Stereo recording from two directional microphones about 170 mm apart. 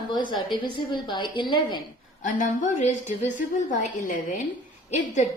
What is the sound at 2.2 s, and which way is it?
A woman's voice, 50° left (ahead or behind).